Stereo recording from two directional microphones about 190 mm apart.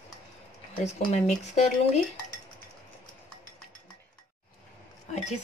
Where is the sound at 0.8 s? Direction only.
35° left (ahead or behind).